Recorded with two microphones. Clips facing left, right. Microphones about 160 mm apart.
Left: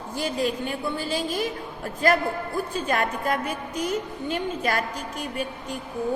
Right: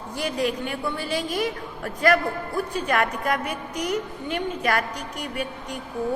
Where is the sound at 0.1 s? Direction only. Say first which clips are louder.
Even; 25° left (ahead or behind).